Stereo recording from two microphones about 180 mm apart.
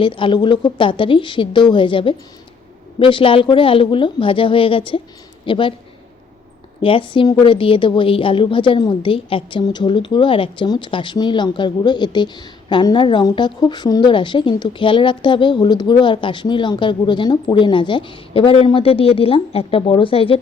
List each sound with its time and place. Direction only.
0.0 s a woman's voice: 30° left (ahead or behind)
6.8 s a woman's voice: 30° left (ahead or behind)